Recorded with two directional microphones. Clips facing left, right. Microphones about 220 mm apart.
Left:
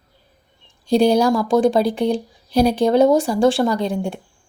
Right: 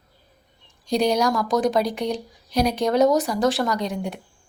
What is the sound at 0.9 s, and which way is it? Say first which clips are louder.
Speech: left 6 dB; 30° left (ahead or behind).